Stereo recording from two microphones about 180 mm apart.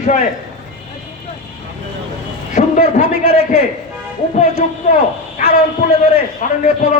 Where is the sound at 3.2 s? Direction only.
60° right (ahead or behind).